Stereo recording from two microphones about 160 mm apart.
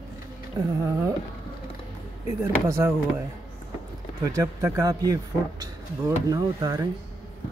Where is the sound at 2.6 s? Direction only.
15° right (ahead or behind).